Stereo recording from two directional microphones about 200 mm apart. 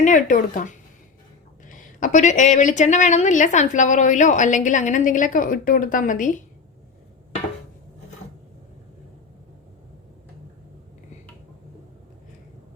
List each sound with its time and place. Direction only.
0.0 s a woman's voice: 40° left (ahead or behind)
1.7 s a woman's voice: 40° left (ahead or behind)